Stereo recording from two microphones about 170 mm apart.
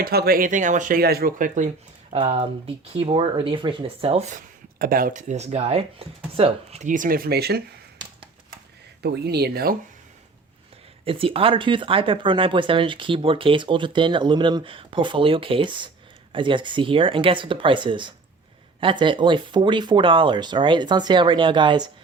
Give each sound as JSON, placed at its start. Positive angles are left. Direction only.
{"t": 0.0, "sound": "speech", "side_deg": -65}
{"t": 2.1, "sound": "speech", "side_deg": -35}
{"t": 9.0, "sound": "speech", "side_deg": -70}
{"t": 11.0, "sound": "speech", "side_deg": -35}